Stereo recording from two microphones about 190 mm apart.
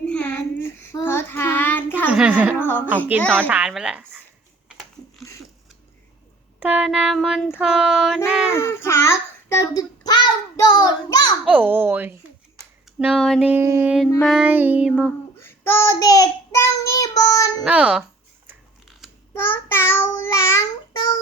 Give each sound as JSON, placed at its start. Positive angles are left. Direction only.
{"t": 0.0, "sound": "child singing", "side_deg": 5}
{"t": 2.1, "sound": "a woman's voice", "side_deg": -5}
{"t": 2.6, "sound": "a sound", "side_deg": 10}
{"t": 3.3, "sound": "speech", "side_deg": -10}
{"t": 6.6, "sound": "child singing", "side_deg": -5}
{"t": 8.5, "sound": "a child's voice", "side_deg": 15}
{"t": 11.4, "sound": "speech", "side_deg": -10}
{"t": 13.0, "sound": "child singing", "side_deg": -5}
{"t": 13.5, "sound": "speech", "side_deg": -15}
{"t": 14.2, "sound": "child singing", "side_deg": -5}
{"t": 15.4, "sound": "child singing", "side_deg": 10}
{"t": 17.6, "sound": "child singing", "side_deg": -5}
{"t": 18.4, "sound": "a sound", "side_deg": 0}
{"t": 19.3, "sound": "child singing", "side_deg": 10}